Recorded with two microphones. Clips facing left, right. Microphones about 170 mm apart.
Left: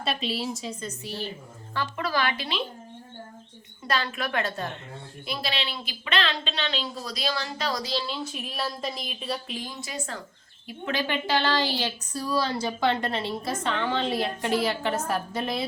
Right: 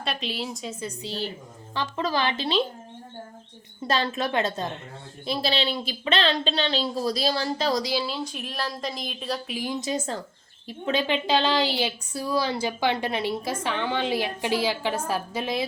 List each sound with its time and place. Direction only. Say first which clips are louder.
0.0 s a woman's voice: left 2 dB; centre (ahead or behind); by 2.6 s 30° right (ahead or behind)
3.8 s a woman's voice: right 3 dB; 25° right (ahead or behind)
7.9 s speech: right 2 dB; centre (ahead or behind)
9.6 s a woman's voice: right 7 dB; 20° right (ahead or behind)